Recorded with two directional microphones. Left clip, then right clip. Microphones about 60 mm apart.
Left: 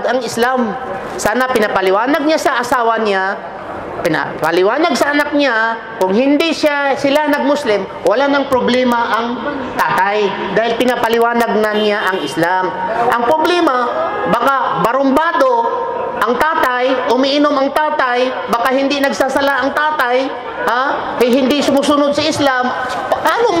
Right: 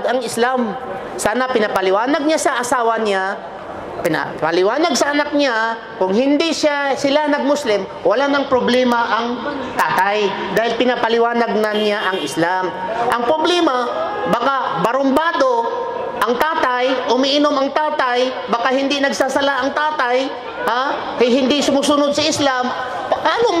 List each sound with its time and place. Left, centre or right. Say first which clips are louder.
0.0 s a woman's voice: left 2 dB; centre